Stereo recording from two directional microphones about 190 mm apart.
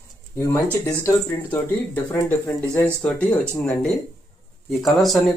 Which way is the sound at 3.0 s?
5° left (ahead or behind).